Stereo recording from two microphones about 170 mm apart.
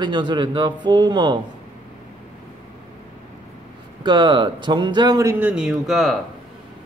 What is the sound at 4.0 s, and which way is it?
A man's voice, 25° right (ahead or behind).